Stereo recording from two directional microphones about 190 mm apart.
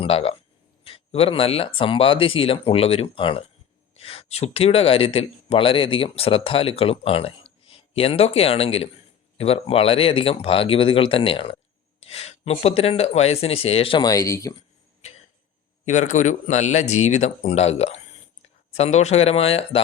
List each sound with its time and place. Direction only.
0.0 s speech: 30° left (ahead or behind)
15.9 s speech: 40° left (ahead or behind)